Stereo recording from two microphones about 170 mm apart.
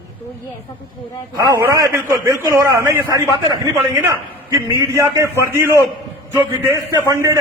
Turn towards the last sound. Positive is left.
turn(degrees=-20)  # may be behind; listen again after turning